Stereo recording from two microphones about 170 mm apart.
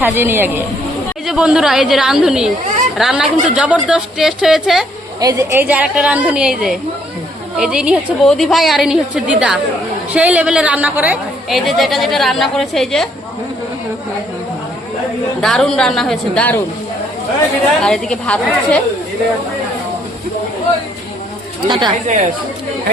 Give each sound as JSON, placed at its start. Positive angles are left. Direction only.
{"t": 0.0, "sound": "a woman's voice", "side_deg": -10}
{"t": 5.2, "sound": "a woman's voice", "side_deg": -20}
{"t": 15.4, "sound": "a woman's voice", "side_deg": 5}
{"t": 17.8, "sound": "a woman's voice", "side_deg": 5}
{"t": 21.7, "sound": "speech", "side_deg": -25}
{"t": 22.0, "sound": "speech", "side_deg": -45}